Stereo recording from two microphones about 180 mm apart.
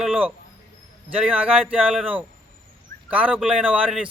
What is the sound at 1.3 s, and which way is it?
Speech, 10° right (ahead or behind).